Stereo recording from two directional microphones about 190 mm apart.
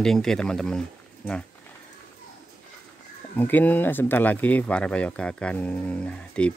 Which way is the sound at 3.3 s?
10° left (ahead or behind).